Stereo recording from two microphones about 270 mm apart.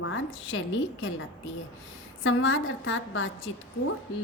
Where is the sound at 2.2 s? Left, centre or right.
Left.